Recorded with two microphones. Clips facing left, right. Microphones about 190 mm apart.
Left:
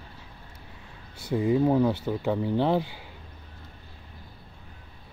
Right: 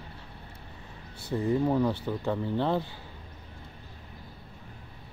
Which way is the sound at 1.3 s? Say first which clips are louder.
Left 4 dB; 10° left (ahead or behind).